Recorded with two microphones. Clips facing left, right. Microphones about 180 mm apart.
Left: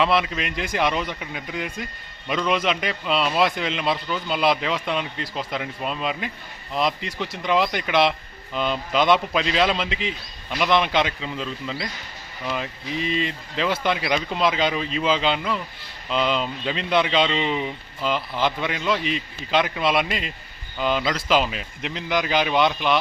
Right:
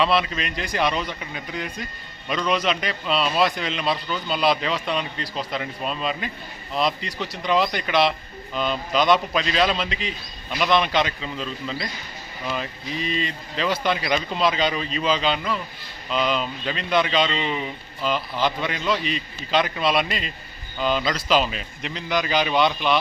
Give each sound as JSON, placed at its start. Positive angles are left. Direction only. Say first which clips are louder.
{"t": 0.0, "sound": "speech", "louder": "even", "side_deg": 15}
{"t": 7.4, "sound": "speech", "louder": "even", "side_deg": 15}